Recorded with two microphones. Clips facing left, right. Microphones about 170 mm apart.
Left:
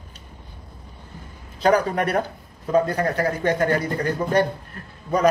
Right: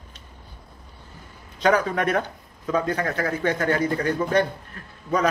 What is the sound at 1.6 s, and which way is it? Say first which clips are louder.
Speech: left 2 dB; 35° left (ahead or behind).